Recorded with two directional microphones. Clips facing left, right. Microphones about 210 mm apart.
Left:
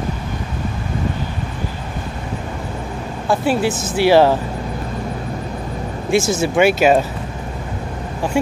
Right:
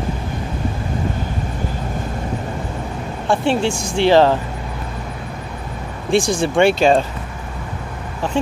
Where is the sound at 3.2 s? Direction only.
Centre (ahead or behind).